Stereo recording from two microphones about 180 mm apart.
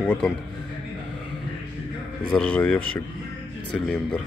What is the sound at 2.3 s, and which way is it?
Speech, 10° left (ahead or behind).